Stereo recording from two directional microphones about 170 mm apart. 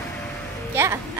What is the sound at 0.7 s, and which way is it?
Speech, 15° right (ahead or behind).